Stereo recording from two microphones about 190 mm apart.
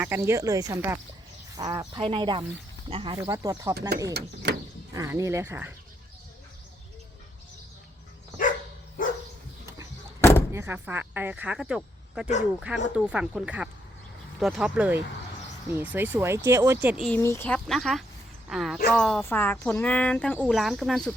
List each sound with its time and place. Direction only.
0.0 s speech: 15° right (ahead or behind)
3.8 s speech: 60° right (ahead or behind)
4.5 s sheep: 60° right (ahead or behind)
4.9 s speech: 15° right (ahead or behind)
10.2 s door: 15° left (ahead or behind)
10.5 s speech: 10° right (ahead or behind)
17.1 s speech: 10° left (ahead or behind)